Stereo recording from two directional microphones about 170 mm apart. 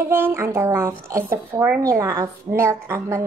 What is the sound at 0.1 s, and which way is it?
A woman's voice, 15° right (ahead or behind).